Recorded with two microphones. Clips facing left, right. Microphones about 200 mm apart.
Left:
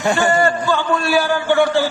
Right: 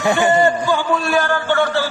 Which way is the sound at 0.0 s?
20° right (ahead or behind).